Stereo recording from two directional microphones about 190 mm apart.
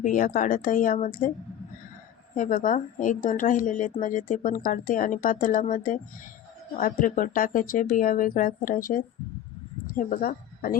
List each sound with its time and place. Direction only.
0.0 s a woman's voice: 45° left (ahead or behind)
2.3 s a woman's voice: 45° left (ahead or behind)